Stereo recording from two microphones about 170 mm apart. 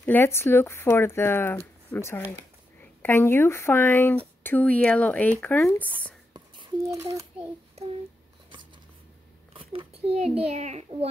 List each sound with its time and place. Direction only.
0.0 s speech: 15° left (ahead or behind)
6.3 s whispering: 25° right (ahead or behind)
7.0 s a child's voice: 20° right (ahead or behind)
9.5 s a child's voice: 35° right (ahead or behind)